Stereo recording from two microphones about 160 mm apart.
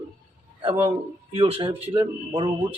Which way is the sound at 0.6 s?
35° right (ahead or behind).